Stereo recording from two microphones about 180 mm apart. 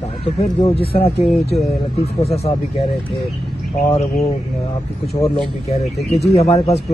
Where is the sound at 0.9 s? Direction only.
35° left (ahead or behind).